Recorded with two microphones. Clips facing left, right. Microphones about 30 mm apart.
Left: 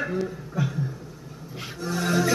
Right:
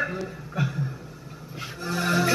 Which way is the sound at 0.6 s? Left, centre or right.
Right.